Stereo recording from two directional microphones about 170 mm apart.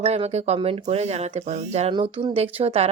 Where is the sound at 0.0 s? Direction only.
40° right (ahead or behind).